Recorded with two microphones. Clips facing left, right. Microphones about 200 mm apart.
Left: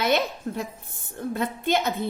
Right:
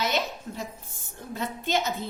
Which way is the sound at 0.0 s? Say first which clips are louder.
Left 5 dB; 55° left (ahead or behind).